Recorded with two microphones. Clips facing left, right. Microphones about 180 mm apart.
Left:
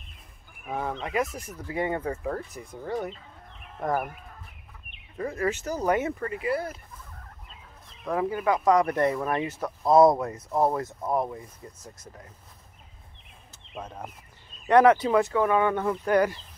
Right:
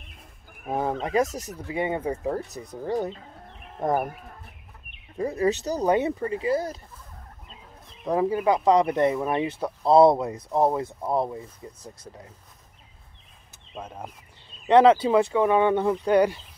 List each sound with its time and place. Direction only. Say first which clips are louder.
0.7 s speech: right 5 dB; 35° right (ahead or behind)
1.7 s speech: right 1 dB; 20° right (ahead or behind)
2.5 s speech: right 4 dB; 40° right (ahead or behind)
3.0 s bird: right 4 dB; 35° right (ahead or behind)
3.8 s speech: right 3 dB; 25° right (ahead or behind)
5.1 s speech: right 4 dB; 20° right (ahead or behind)
6.5 s speech: right 3 dB; 40° right (ahead or behind)
8.0 s speech: right 4 dB; 25° right (ahead or behind)
10.2 s speech: right 2 dB; 15° right (ahead or behind)
13.7 s speech: right 1 dB; 10° right (ahead or behind)
14.7 s speech: right 2 dB; 25° right (ahead or behind)